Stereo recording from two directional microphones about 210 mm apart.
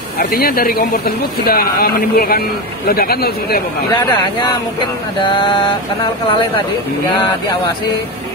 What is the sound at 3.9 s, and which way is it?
Speech, 20° left (ahead or behind).